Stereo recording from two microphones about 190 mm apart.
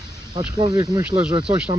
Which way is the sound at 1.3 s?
25° right (ahead or behind).